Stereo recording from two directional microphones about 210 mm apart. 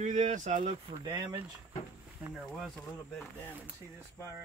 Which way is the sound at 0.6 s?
25° right (ahead or behind).